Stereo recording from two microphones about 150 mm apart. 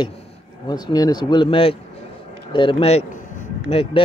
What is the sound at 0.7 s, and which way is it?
Speech, 25° left (ahead or behind).